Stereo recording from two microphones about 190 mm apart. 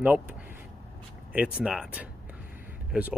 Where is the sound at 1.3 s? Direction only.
5° right (ahead or behind).